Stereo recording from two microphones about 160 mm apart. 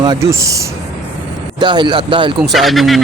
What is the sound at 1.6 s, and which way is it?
Speech, 30° right (ahead or behind).